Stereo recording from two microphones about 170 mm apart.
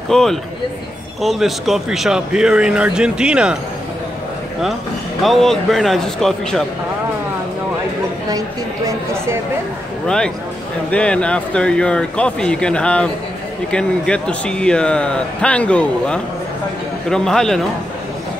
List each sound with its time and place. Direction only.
0.1 s a man's voice: 5° left (ahead or behind)
5.2 s a man's voice: centre (ahead or behind)
8.3 s a woman's voice: 20° right (ahead or behind)
10.0 s a man's voice: 5° left (ahead or behind)